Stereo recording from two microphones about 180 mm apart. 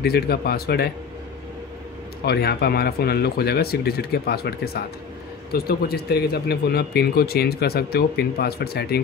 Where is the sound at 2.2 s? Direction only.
60° left (ahead or behind).